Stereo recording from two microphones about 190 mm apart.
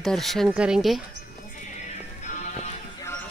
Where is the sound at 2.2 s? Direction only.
40° left (ahead or behind).